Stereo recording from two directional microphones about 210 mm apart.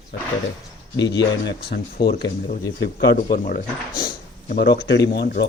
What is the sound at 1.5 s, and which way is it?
Speech, 50° left (ahead or behind).